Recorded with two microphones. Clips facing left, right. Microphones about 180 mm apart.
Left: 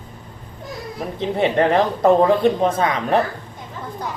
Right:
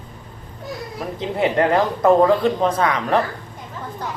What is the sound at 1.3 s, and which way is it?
Speech, 25° left (ahead or behind).